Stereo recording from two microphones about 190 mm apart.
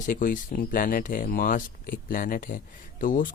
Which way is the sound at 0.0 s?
45° left (ahead or behind).